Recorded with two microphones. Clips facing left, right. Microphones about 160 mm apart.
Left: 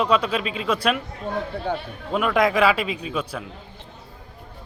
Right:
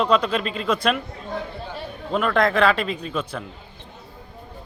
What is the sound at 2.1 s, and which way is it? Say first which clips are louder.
A man's voice: even; 5° left (ahead or behind).